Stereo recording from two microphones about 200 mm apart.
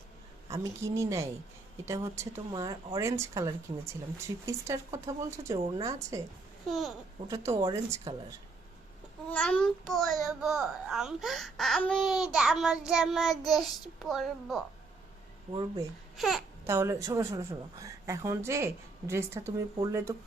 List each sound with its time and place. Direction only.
0.5 s speech: 15° right (ahead or behind)
6.7 s a child's voice: centre (ahead or behind)
7.3 s speech: 15° right (ahead or behind)
9.3 s a child's voice: 5° left (ahead or behind)
16.1 s a child's voice: centre (ahead or behind)
16.6 s speech: 15° right (ahead or behind)